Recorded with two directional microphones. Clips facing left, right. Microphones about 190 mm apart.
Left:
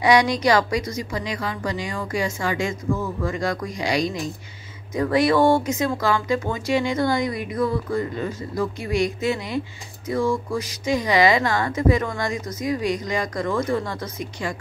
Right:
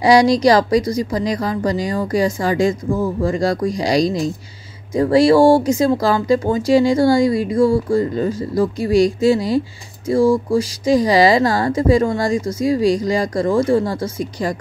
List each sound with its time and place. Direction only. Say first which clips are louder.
0.0 s speech: right 6 dB; 35° right (ahead or behind)